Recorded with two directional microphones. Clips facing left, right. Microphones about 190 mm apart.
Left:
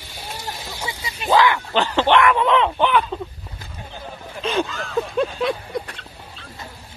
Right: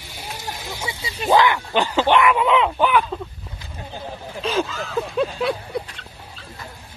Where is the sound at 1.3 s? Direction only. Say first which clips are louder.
Even; 20° right (ahead or behind).